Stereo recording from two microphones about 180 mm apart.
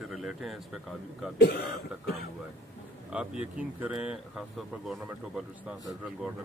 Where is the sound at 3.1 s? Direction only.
5° right (ahead or behind).